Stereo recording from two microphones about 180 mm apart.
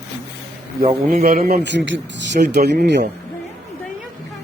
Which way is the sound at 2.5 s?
65° right (ahead or behind).